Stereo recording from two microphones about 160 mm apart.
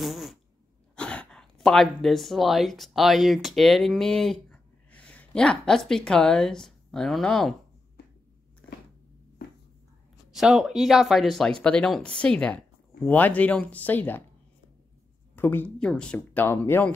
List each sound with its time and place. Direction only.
0.0 s cat: centre (ahead or behind)
0.9 s speech: 5° left (ahead or behind)
10.3 s speech: centre (ahead or behind)
15.3 s speech: 10° left (ahead or behind)